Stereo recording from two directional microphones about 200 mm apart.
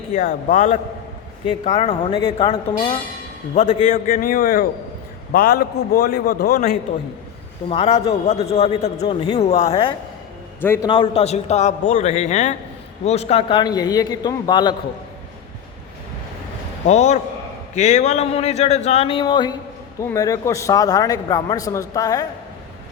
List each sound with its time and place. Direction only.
0.1 s a man's voice: 45° left (ahead or behind)
1.6 s a man's voice: 30° left (ahead or behind); by 6.7 s 50° left (ahead or behind)
7.7 s speech: 30° left (ahead or behind)
10.6 s a man's voice: 10° left (ahead or behind)
10.8 s a man's voice: 25° left (ahead or behind)
16.8 s a man's voice: 35° left (ahead or behind); by 22.3 s 15° left (ahead or behind)